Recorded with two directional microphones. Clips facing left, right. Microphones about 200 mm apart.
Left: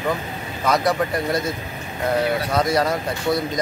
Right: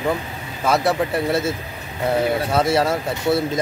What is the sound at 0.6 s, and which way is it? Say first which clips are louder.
Speech: right 1 dB; 5° right (ahead or behind).